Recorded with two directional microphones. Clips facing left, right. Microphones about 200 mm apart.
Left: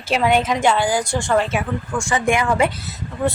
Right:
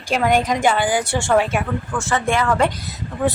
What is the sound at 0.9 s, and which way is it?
Speech, 65° right (ahead or behind).